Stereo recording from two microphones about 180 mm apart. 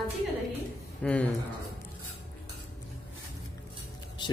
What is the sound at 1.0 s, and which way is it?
Speech, 5° left (ahead or behind).